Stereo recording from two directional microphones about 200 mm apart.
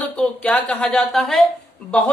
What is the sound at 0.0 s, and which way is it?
Speech, 5° left (ahead or behind).